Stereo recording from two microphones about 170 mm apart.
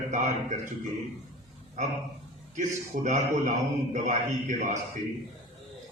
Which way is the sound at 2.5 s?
45° right (ahead or behind).